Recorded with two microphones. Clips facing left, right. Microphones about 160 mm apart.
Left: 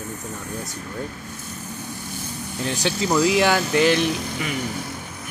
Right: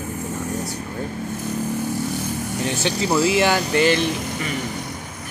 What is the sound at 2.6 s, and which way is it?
Speech, centre (ahead or behind).